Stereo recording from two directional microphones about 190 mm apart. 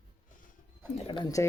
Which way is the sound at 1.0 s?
25° left (ahead or behind).